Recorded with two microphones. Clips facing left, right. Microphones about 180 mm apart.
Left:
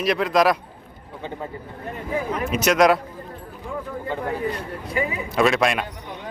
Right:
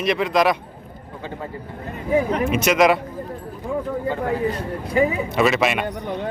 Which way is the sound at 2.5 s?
Centre (ahead or behind).